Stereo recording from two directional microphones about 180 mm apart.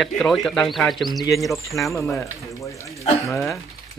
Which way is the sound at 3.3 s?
15° left (ahead or behind).